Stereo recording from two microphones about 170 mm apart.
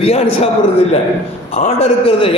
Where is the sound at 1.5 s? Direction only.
40° left (ahead or behind).